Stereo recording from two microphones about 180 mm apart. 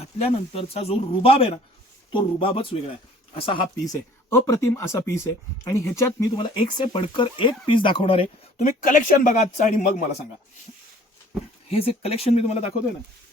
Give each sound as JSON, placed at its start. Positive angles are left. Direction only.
{"t": 0.2, "sound": "speech", "side_deg": 35}
{"t": 4.3, "sound": "speech", "side_deg": 15}
{"t": 6.3, "sound": "speech", "side_deg": 30}
{"t": 8.5, "sound": "a man's voice", "side_deg": 45}
{"t": 11.7, "sound": "speech", "side_deg": 30}